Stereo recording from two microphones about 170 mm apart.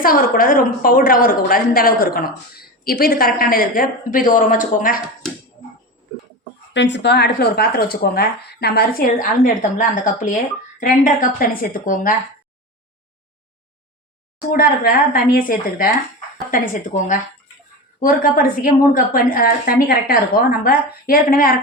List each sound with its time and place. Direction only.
0.0 s speech: 55° left (ahead or behind)
6.7 s speech: 90° left; by 12.1 s 55° left (ahead or behind)
14.5 s speech: 60° left (ahead or behind)